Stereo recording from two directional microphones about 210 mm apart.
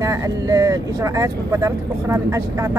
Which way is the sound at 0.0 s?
15° right (ahead or behind).